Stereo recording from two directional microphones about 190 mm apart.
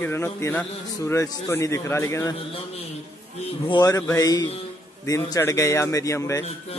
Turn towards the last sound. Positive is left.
turn(degrees=15)  # may be behind; listen again after turning